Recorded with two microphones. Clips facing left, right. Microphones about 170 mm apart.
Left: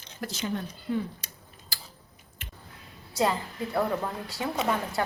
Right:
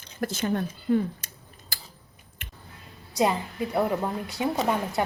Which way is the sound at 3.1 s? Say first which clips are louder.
Right 2 dB; 15° right (ahead or behind).